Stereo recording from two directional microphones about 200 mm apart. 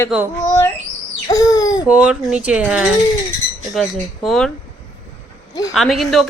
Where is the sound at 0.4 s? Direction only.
15° left (ahead or behind).